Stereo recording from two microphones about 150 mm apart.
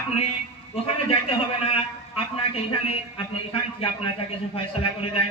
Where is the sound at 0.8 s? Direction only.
40° left (ahead or behind).